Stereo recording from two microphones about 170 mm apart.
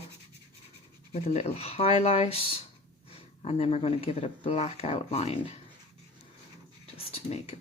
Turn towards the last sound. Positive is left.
turn(degrees=35)  # may be behind; listen again after turning